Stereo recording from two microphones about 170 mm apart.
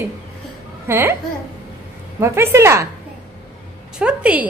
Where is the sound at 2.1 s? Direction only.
15° right (ahead or behind).